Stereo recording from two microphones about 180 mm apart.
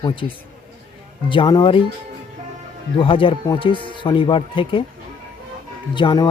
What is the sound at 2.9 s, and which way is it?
Speech, 30° left (ahead or behind).